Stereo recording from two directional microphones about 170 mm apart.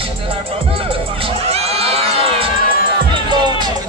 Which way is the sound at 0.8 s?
35° right (ahead or behind).